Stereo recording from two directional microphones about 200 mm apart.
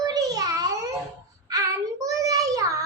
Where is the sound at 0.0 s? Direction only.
20° right (ahead or behind).